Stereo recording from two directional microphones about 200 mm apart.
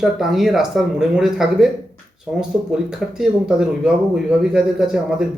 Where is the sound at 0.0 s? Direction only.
Centre (ahead or behind).